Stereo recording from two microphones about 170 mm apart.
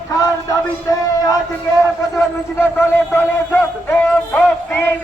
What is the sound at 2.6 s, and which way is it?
A man's voice, 15° left (ahead or behind).